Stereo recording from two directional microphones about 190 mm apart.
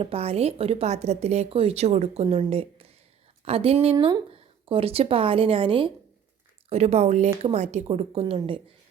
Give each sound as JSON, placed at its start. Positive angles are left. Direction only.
{"t": 0.0, "sound": "a woman's voice", "side_deg": -30}